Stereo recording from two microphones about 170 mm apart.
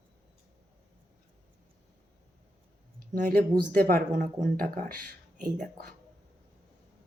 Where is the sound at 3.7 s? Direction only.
60° right (ahead or behind).